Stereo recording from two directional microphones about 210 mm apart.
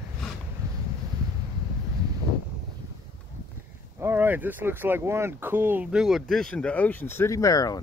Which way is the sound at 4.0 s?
10° right (ahead or behind).